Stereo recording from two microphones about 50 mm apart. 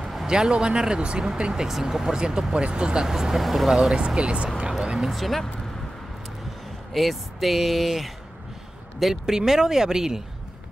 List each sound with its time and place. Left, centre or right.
0.3 s speech: centre
3.9 s speech: centre
4.6 s a sound: centre
5.1 s speech: centre
6.9 s speech: centre